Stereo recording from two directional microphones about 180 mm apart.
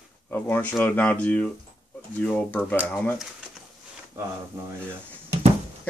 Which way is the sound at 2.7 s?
10° right (ahead or behind).